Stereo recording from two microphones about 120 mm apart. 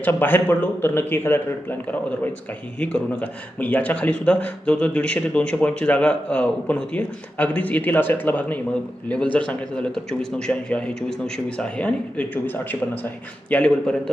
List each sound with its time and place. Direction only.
0.0 s speech: 15° left (ahead or behind)
2.8 s speech: 10° left (ahead or behind)